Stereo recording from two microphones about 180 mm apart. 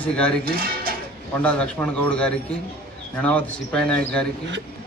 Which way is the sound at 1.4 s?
5° left (ahead or behind).